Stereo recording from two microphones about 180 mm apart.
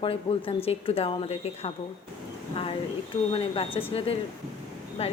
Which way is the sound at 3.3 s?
30° left (ahead or behind).